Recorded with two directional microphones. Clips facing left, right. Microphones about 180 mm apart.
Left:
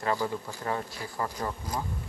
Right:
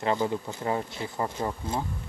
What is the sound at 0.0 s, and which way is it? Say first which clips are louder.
Speech: right 3 dB; 20° right (ahead or behind).